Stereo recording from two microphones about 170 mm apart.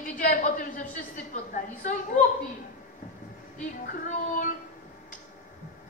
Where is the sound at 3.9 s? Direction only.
50° left (ahead or behind).